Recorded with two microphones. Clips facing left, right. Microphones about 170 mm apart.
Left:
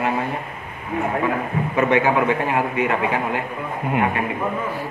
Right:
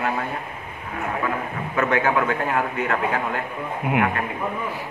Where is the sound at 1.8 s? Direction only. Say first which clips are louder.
Left 3 dB; 15° left (ahead or behind).